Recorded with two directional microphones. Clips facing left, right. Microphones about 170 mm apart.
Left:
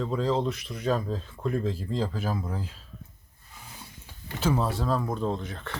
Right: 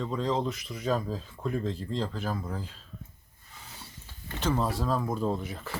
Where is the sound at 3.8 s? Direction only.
10° left (ahead or behind).